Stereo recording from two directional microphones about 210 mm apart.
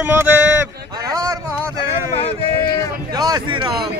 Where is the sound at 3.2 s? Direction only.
20° right (ahead or behind).